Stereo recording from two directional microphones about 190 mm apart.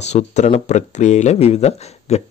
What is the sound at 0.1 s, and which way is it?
Speech, 35° left (ahead or behind).